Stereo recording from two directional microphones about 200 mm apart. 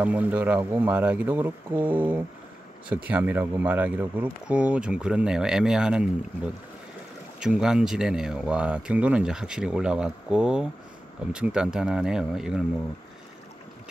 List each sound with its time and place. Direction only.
0.0 s speech: 5° right (ahead or behind)